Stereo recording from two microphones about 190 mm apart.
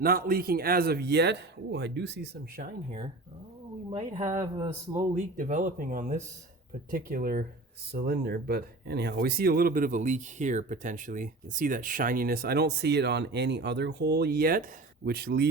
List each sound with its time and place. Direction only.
0.0 s speech: 50° right (ahead or behind)
4.2 s speech: 40° right (ahead or behind)
4.5 s speech: 25° right (ahead or behind)
5.1 s speech: 45° right (ahead or behind)